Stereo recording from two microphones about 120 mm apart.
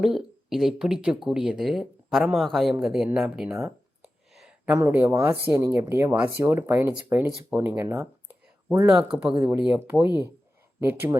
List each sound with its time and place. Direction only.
0.0 s speech: centre (ahead or behind)
4.0 s a sound: 5° right (ahead or behind)
4.7 s speech: 15° right (ahead or behind)
9.0 s speech: 10° right (ahead or behind)